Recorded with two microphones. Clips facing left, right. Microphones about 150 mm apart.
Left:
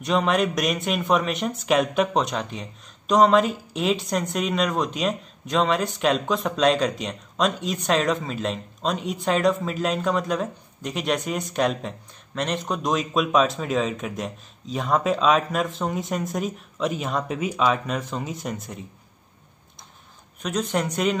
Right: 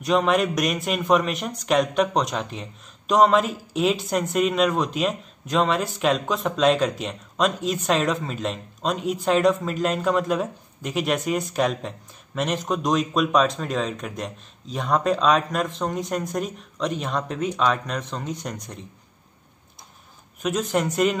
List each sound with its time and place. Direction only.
0.0 s a man's voice: centre (ahead or behind)
20.4 s a man's voice: centre (ahead or behind)